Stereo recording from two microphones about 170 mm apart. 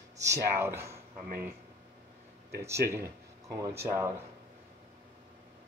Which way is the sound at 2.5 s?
15° right (ahead or behind).